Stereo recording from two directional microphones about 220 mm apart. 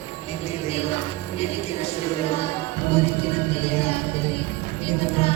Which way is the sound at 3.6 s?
25° left (ahead or behind).